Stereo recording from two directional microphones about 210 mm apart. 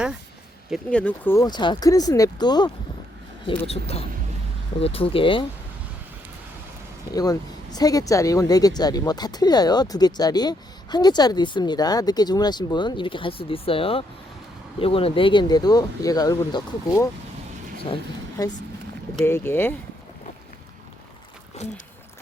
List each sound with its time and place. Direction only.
0.7 s speech: 5° left (ahead or behind); by 5.5 s 25° left (ahead or behind)
7.1 s speech: 15° left (ahead or behind)
21.6 s speech: 30° left (ahead or behind)